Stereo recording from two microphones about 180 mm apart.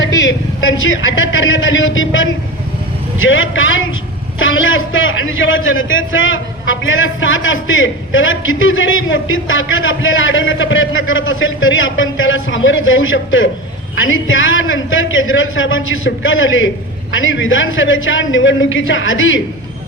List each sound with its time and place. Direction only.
0.0 s a man's voice: 90° left